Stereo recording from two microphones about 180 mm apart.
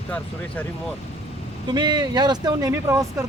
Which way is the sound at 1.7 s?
25° right (ahead or behind).